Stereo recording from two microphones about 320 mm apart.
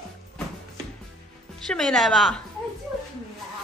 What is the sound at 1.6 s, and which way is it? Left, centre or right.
Speech, centre.